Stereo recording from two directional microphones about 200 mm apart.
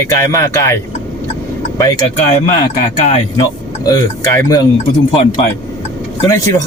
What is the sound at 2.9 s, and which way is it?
Speech, 30° left (ahead or behind).